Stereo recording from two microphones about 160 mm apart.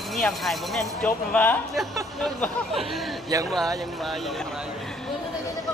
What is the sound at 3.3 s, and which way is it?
Speech, 20° right (ahead or behind).